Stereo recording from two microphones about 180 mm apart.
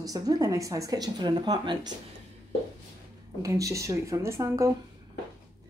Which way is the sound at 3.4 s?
15° right (ahead or behind).